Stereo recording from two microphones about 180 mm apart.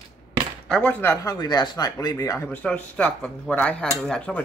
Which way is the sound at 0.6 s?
5° left (ahead or behind).